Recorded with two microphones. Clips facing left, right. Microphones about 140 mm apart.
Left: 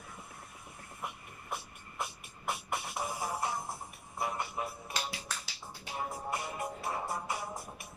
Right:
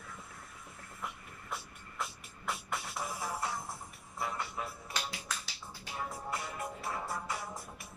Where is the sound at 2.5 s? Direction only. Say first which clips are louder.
Left 2 dB; 25° left (ahead or behind).